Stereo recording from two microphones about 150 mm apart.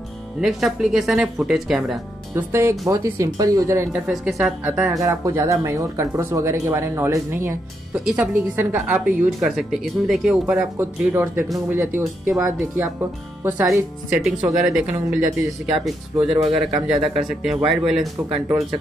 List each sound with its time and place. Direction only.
0.4 s speech: centre (ahead or behind)
2.3 s speech: 15° right (ahead or behind)
4.1 s speech: centre (ahead or behind)
4.9 s speech: 20° right (ahead or behind); by 18.0 s centre (ahead or behind)